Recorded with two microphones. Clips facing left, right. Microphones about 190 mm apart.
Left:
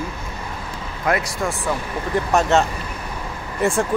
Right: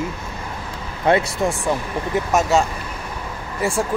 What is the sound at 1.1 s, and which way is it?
Speech, 25° right (ahead or behind).